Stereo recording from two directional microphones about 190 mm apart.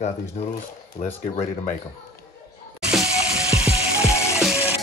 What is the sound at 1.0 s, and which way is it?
Speech, 35° left (ahead or behind).